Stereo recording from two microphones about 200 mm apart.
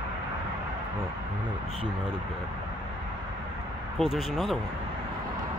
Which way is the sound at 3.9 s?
Centre (ahead or behind).